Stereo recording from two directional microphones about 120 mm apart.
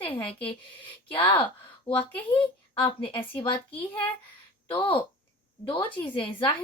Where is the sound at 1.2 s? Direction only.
15° left (ahead or behind).